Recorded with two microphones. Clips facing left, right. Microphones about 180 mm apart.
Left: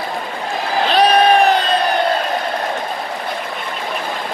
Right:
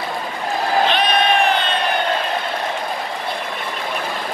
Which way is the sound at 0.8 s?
35° left (ahead or behind).